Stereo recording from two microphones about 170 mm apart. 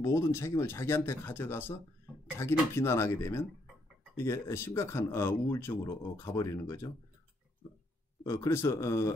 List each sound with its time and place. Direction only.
0.0 s speech: 15° left (ahead or behind)
8.2 s speech: 15° left (ahead or behind)